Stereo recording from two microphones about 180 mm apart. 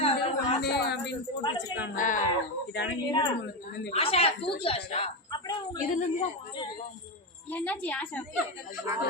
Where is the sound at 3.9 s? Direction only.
35° left (ahead or behind).